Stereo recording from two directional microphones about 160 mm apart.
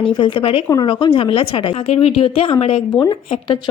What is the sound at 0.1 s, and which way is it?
A woman's voice, 30° left (ahead or behind).